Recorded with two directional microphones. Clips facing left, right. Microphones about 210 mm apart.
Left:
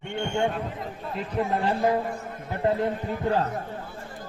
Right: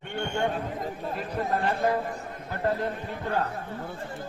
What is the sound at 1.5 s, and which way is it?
A man's voice, 15° left (ahead or behind).